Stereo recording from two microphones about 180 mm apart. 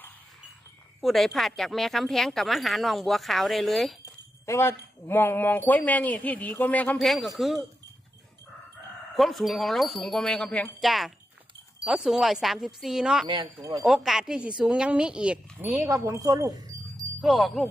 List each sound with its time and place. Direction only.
1.0 s speech: centre (ahead or behind)
4.0 s speech: 15° left (ahead or behind); by 7.6 s centre (ahead or behind)
9.1 s speech: centre (ahead or behind)
13.2 s speech: 25° right (ahead or behind)
13.8 s speech: centre (ahead or behind)
15.8 s speech: 15° right (ahead or behind)
17.2 s speech: centre (ahead or behind)